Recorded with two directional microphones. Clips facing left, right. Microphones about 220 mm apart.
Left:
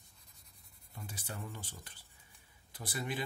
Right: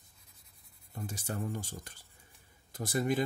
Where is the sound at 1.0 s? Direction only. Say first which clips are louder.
Right 8 dB; 45° right (ahead or behind).